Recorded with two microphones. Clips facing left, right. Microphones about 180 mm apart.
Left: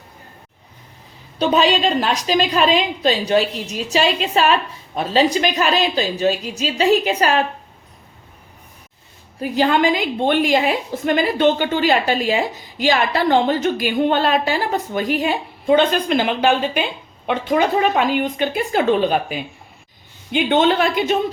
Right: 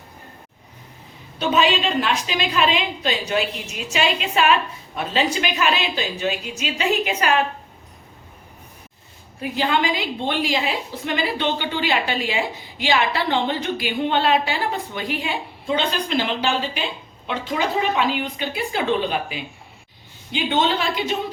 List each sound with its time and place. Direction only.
1.4 s a woman's voice: 35° left (ahead or behind)
9.4 s a woman's voice: 45° left (ahead or behind)